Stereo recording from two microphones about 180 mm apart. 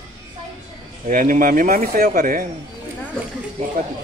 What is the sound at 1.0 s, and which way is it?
Speech, 45° right (ahead or behind).